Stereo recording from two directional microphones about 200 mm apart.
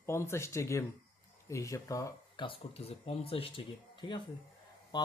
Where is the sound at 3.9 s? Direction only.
25° left (ahead or behind).